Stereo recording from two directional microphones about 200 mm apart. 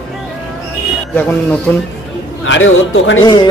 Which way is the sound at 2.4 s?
70° left (ahead or behind).